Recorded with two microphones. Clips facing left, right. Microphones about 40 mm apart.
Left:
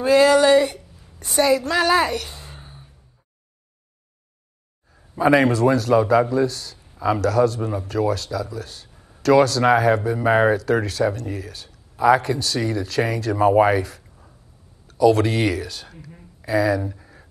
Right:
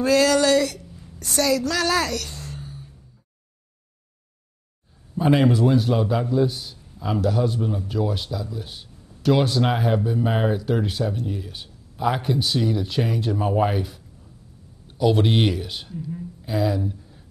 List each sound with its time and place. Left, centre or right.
0.0 s speech: left
2.6 s gasp: left
5.1 s a man's voice: left
8.9 s a sound: left
9.2 s speech: left